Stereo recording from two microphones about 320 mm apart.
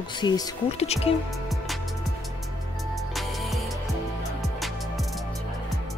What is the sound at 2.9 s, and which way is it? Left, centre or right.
Music, centre.